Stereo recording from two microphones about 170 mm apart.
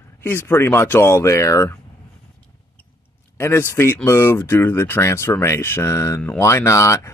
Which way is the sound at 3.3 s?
15° left (ahead or behind).